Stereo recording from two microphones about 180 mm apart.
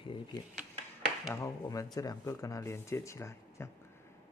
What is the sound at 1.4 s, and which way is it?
Speech, 20° left (ahead or behind).